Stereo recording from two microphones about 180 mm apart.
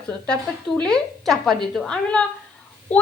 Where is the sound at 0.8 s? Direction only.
5° left (ahead or behind).